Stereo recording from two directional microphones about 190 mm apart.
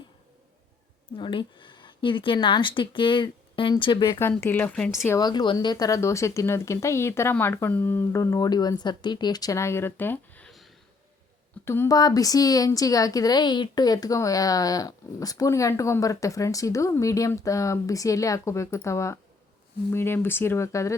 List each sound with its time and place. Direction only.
1.1 s speech: 25° left (ahead or behind)
4.2 s speech: 10° left (ahead or behind)
11.6 s speech: 15° left (ahead or behind)